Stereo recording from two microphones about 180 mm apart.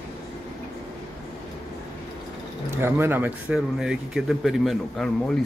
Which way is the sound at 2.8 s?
10° right (ahead or behind).